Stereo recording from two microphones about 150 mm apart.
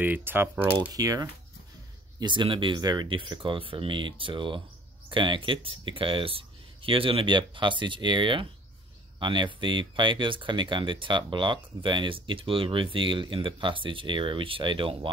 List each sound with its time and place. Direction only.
0.0 s speech: 10° right (ahead or behind)
0.9 s speech: 25° right (ahead or behind)